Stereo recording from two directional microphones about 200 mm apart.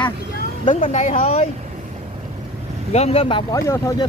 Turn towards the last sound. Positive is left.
turn(degrees=15)  # may be behind; listen again after turning